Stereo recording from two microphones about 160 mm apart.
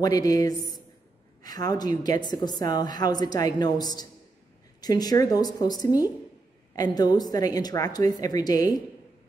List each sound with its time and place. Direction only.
0.0 s a woman's voice: 25° left (ahead or behind)